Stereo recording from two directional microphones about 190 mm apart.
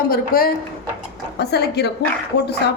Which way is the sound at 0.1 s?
50° left (ahead or behind).